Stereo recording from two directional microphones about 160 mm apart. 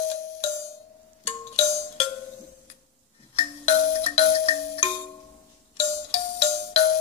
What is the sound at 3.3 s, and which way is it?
Music, 40° left (ahead or behind).